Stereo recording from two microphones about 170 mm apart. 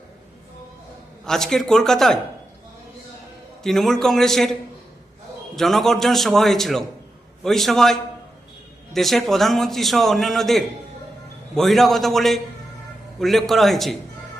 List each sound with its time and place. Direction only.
1.2 s a man's voice: 5° left (ahead or behind)
3.6 s a man's voice: centre (ahead or behind)
5.5 s a man's voice: centre (ahead or behind)